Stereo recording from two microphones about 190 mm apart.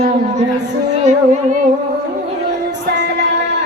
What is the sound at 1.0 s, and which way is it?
Music, 40° right (ahead or behind).